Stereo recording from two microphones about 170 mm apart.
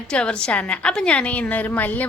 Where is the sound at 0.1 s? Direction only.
5° left (ahead or behind).